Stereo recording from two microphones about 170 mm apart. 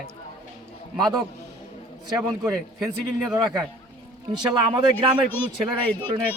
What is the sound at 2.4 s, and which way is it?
A man's voice, 5° right (ahead or behind).